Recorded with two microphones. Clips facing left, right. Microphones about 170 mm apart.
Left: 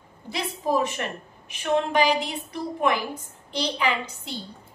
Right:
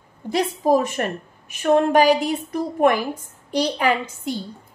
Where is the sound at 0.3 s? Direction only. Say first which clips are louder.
Right 7 dB; 45° right (ahead or behind).